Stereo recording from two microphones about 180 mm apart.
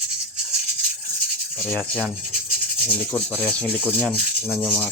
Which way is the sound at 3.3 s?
10° left (ahead or behind).